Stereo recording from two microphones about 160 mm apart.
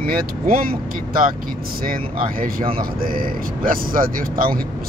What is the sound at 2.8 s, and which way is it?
Speech, 65° right (ahead or behind).